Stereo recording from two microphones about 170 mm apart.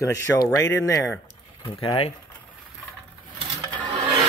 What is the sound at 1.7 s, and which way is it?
Speech, 30° left (ahead or behind).